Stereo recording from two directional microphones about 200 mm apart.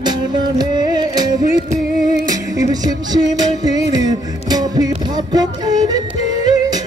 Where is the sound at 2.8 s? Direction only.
20° right (ahead or behind).